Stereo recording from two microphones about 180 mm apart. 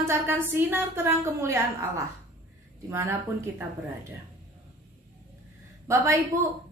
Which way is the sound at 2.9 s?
15° right (ahead or behind).